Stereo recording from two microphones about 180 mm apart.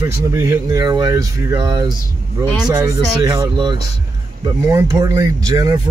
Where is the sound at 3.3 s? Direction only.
20° right (ahead or behind).